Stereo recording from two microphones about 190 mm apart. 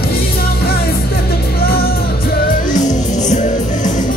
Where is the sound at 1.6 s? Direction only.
55° left (ahead or behind).